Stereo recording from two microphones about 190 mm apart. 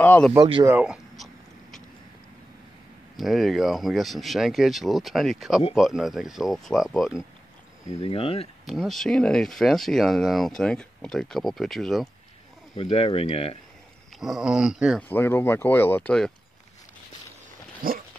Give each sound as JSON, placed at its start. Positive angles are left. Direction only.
{"t": 0.0, "sound": "a sound", "side_deg": 10}
{"t": 0.7, "sound": "a sound", "side_deg": -5}
{"t": 3.2, "sound": "speech", "side_deg": 0}
{"t": 8.0, "sound": "speech", "side_deg": 30}
{"t": 8.6, "sound": "speech", "side_deg": 0}
{"t": 12.7, "sound": "speech", "side_deg": 30}
{"t": 14.1, "sound": "speech", "side_deg": 0}
{"t": 15.0, "sound": "speech", "side_deg": 10}
{"t": 17.8, "sound": "dog", "side_deg": -50}